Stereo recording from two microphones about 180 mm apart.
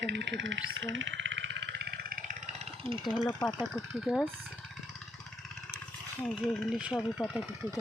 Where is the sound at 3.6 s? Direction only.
Centre (ahead or behind).